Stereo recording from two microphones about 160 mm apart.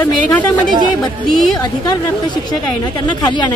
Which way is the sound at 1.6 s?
25° left (ahead or behind).